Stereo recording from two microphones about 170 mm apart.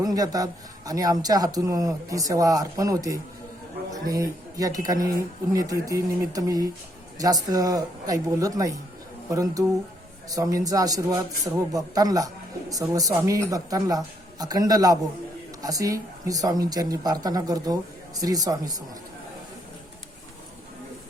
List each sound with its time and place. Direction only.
0.0 s speech: 20° right (ahead or behind)